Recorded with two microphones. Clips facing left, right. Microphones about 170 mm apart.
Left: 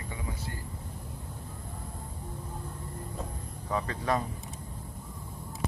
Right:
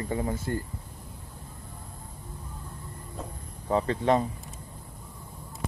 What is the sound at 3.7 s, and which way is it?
Speech, 30° right (ahead or behind).